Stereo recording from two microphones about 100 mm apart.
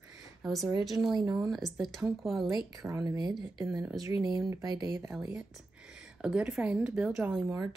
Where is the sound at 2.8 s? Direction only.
35° right (ahead or behind).